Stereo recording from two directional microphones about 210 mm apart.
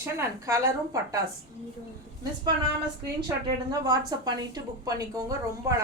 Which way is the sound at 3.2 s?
20° right (ahead or behind).